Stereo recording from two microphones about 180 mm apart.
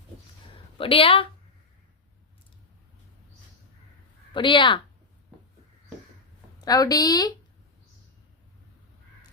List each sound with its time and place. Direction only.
0.8 s a woman's voice: 30° left (ahead or behind)
4.4 s a woman's voice: 25° left (ahead or behind)
6.6 s a woman's voice: 20° left (ahead or behind)